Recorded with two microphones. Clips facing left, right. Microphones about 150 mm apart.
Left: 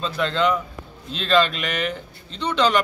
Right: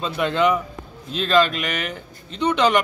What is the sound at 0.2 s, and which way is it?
A man's voice, 10° right (ahead or behind).